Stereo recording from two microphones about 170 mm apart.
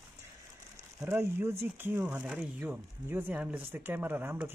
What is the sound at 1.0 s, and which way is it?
Speech, 15° right (ahead or behind).